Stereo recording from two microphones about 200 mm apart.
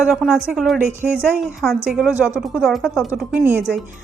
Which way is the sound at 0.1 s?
Centre (ahead or behind).